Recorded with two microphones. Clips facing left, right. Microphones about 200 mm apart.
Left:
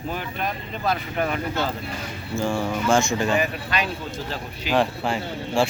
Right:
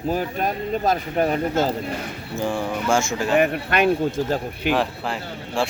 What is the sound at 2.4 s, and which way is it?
Speech, 15° right (ahead or behind).